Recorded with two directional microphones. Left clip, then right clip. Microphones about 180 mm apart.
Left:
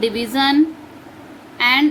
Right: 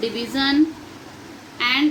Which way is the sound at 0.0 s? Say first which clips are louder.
Left 5 dB; 70° left (ahead or behind).